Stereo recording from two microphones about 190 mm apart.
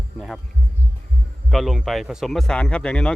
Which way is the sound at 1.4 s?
Centre (ahead or behind).